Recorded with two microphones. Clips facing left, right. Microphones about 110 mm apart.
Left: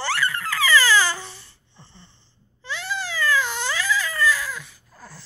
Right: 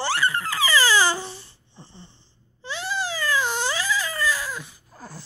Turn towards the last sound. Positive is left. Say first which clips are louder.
# right 3 dB
turn(degrees=-20)  # may be behind; listen again after turning